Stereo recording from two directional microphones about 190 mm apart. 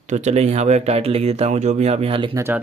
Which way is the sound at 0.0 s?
35° right (ahead or behind).